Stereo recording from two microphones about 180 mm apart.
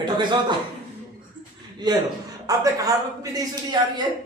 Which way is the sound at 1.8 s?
25° right (ahead or behind).